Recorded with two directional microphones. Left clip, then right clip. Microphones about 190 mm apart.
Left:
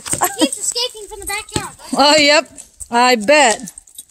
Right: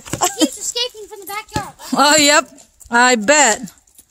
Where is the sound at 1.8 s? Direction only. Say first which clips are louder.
Left 1 dB; 20° right (ahead or behind).